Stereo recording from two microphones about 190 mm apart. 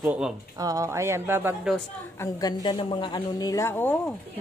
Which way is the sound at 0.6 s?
20° right (ahead or behind).